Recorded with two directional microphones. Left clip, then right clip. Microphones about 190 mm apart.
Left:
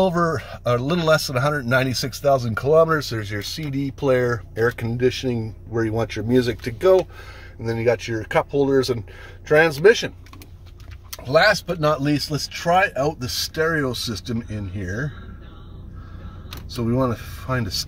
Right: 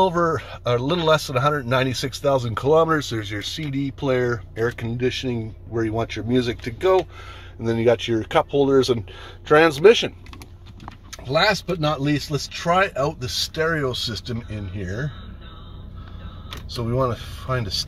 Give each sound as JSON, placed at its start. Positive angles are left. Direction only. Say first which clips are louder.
{"t": 0.0, "sound": "speech", "louder": "right 1 dB", "side_deg": 10}
{"t": 7.6, "sound": "speech", "louder": "right 2 dB", "side_deg": -15}
{"t": 11.2, "sound": "speech", "louder": "left 3 dB", "side_deg": 20}
{"t": 12.7, "sound": "speech", "louder": "left 1 dB", "side_deg": 0}
{"t": 16.7, "sound": "speech", "louder": "left 1 dB", "side_deg": 0}